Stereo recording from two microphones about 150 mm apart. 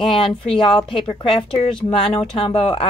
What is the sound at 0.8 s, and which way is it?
Speech, 35° left (ahead or behind).